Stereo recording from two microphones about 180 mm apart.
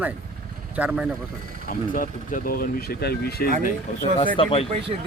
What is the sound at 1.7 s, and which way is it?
Speech, 50° left (ahead or behind).